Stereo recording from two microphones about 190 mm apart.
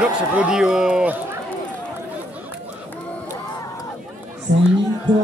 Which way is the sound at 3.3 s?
20° left (ahead or behind).